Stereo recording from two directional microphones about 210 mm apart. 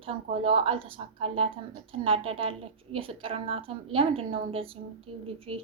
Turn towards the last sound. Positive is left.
turn(degrees=-25)  # may be behind; listen again after turning